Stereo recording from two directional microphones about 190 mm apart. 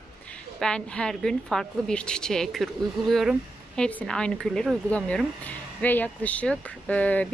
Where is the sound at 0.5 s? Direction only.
5° left (ahead or behind).